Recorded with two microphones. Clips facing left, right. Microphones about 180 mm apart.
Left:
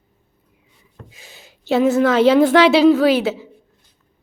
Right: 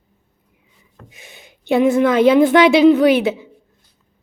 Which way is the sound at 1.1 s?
20° right (ahead or behind).